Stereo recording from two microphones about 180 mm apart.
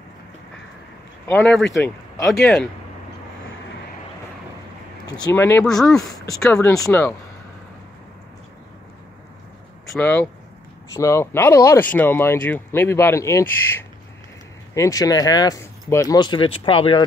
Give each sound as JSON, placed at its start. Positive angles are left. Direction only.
{"t": 1.4, "sound": "speech", "side_deg": 0}
{"t": 5.2, "sound": "speech", "side_deg": 15}
{"t": 5.7, "sound": "speech", "side_deg": 0}
{"t": 5.9, "sound": "speech", "side_deg": 20}
{"t": 6.4, "sound": "speech", "side_deg": 5}
{"t": 9.8, "sound": "speech", "side_deg": 10}